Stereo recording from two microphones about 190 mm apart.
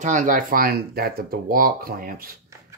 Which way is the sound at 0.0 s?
40° right (ahead or behind).